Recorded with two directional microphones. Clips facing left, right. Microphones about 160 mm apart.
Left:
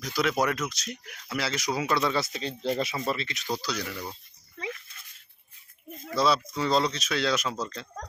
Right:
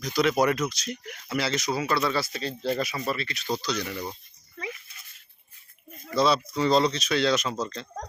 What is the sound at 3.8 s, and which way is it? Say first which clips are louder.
Speech: right 3 dB; 15° right (ahead or behind).